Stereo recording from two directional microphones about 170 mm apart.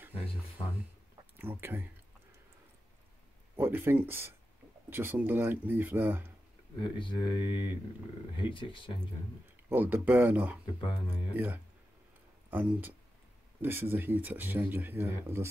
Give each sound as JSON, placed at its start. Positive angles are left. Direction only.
{"t": 0.6, "sound": "speech", "side_deg": 35}
{"t": 1.3, "sound": "speech", "side_deg": -10}
{"t": 3.5, "sound": "speech", "side_deg": -15}
{"t": 6.8, "sound": "speech", "side_deg": 30}
{"t": 9.7, "sound": "speech", "side_deg": -10}